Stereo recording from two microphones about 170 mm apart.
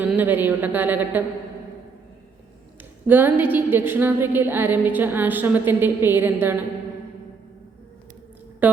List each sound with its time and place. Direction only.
0.0 s a woman's voice: 10° right (ahead or behind)
3.1 s a woman's voice: 10° right (ahead or behind)
8.6 s speech: 10° right (ahead or behind)